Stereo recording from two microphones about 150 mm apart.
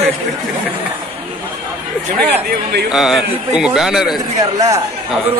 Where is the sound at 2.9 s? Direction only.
Centre (ahead or behind).